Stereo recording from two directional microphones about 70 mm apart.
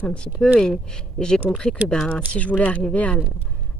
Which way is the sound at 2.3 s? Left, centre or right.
Left.